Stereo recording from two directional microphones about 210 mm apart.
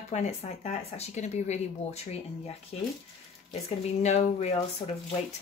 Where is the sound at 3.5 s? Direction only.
30° left (ahead or behind).